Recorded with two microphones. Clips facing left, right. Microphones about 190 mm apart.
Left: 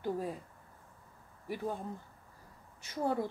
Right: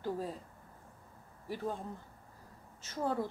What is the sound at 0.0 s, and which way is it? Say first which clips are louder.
Speech: left 2 dB; 15° left (ahead or behind).